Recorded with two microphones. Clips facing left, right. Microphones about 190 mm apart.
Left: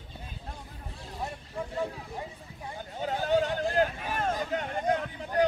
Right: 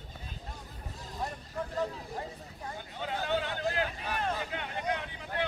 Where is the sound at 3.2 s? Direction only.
40° left (ahead or behind).